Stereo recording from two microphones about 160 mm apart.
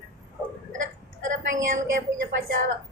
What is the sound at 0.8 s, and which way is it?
Burping, 55° right (ahead or behind).